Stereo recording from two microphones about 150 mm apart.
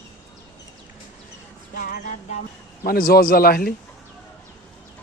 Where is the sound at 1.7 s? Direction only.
70° left (ahead or behind).